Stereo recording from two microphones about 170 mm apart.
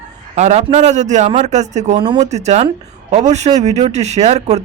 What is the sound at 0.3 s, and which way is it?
A man's voice, 40° right (ahead or behind).